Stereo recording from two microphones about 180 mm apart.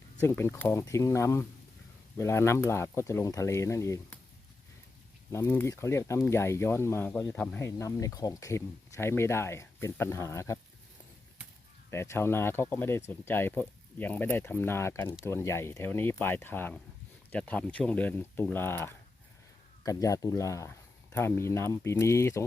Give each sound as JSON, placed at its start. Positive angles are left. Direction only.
{"t": 0.2, "sound": "speech", "side_deg": 15}
{"t": 5.3, "sound": "speech", "side_deg": 15}
{"t": 11.9, "sound": "speech", "side_deg": 15}